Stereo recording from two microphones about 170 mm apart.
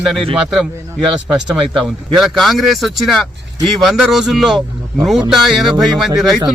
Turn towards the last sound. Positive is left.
turn(degrees=0)  # may be behind; listen again after turning